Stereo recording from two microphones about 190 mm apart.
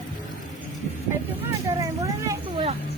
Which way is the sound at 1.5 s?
15° right (ahead or behind).